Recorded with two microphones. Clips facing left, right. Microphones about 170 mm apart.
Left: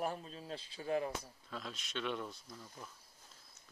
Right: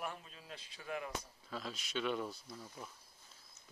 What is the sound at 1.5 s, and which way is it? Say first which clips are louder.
Speech: right 2 dB; centre (ahead or behind).